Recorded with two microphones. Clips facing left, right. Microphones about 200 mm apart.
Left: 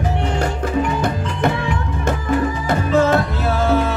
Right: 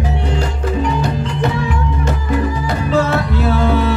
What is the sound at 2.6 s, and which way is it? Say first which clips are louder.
Music: left 3 dB; 45° left (ahead or behind).